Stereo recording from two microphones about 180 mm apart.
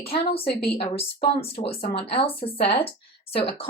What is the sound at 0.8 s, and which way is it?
Speech, 35° left (ahead or behind).